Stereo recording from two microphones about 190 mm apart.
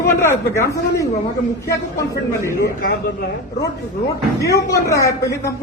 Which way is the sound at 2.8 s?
50° left (ahead or behind).